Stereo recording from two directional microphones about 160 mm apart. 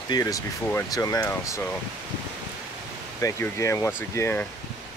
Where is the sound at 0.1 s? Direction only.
20° left (ahead or behind).